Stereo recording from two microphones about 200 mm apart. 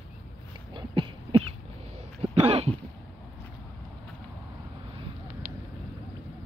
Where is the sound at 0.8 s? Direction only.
25° right (ahead or behind).